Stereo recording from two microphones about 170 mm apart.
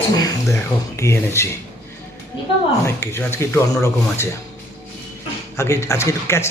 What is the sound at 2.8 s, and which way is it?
Speech, 15° left (ahead or behind).